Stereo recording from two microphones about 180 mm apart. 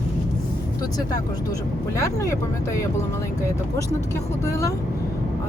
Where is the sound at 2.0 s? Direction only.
15° left (ahead or behind).